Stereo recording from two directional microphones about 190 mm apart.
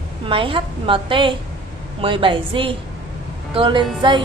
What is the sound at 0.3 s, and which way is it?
Speech, 25° right (ahead or behind).